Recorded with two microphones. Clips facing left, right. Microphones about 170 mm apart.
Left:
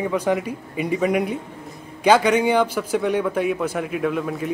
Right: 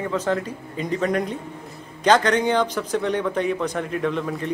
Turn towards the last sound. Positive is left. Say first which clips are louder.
# left 1 dB
turn(degrees=5)  # may be behind; listen again after turning